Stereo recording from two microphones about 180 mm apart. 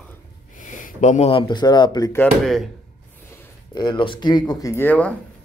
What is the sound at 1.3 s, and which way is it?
Speech, 25° left (ahead or behind).